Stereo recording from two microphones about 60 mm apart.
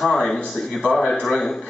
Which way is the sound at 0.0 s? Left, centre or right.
Centre.